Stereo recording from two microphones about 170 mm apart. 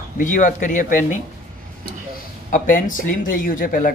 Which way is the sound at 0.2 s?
50° left (ahead or behind).